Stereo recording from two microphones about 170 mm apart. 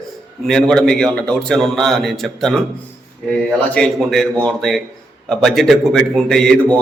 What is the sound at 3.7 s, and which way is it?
A man's voice, 5° left (ahead or behind).